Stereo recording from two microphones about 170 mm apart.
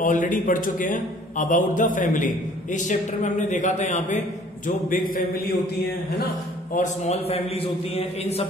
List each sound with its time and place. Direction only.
0.0 s a man's voice: 50° left (ahead or behind)
6.7 s a man's voice: 45° left (ahead or behind)